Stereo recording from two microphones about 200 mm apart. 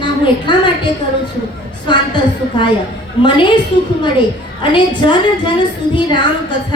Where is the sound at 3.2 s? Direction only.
25° left (ahead or behind).